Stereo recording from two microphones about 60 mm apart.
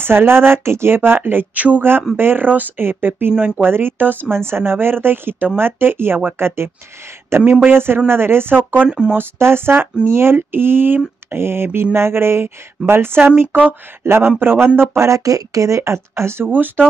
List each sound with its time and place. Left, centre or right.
0.0 s speech: right
1.8 s speech: right
3.3 s speech: right
3.6 s speech: right
8.8 s speech: centre
9.1 s speech: right
14.8 s speech: right